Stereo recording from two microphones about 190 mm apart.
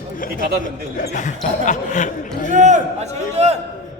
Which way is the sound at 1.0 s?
45° left (ahead or behind).